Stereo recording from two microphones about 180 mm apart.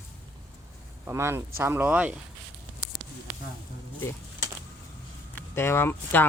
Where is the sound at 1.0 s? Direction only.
15° right (ahead or behind).